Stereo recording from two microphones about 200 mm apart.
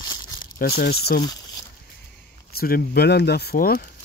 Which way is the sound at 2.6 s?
50° left (ahead or behind).